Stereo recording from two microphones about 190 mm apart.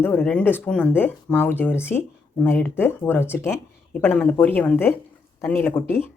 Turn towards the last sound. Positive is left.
turn(degrees=10)  # may be behind; listen again after turning